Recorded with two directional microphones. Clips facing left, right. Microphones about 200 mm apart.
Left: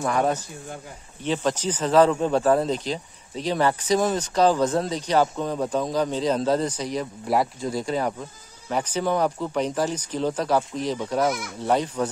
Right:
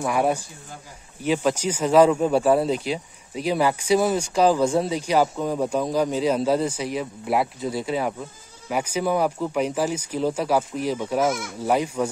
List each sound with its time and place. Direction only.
0.0 s speech: 10° right (ahead or behind)